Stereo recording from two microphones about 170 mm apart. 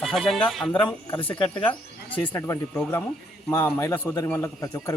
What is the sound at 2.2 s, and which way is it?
A man's voice, 15° left (ahead or behind).